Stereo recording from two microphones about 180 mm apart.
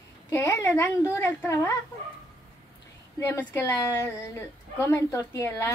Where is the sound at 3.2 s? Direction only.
10° left (ahead or behind).